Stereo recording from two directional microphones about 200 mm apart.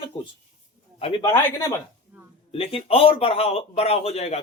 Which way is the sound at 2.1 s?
10° right (ahead or behind).